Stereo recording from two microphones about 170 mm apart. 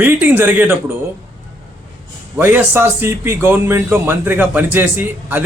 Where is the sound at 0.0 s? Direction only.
10° right (ahead or behind).